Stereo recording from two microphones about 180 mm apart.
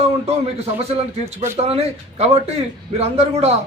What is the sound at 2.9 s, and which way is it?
Speech, 35° right (ahead or behind).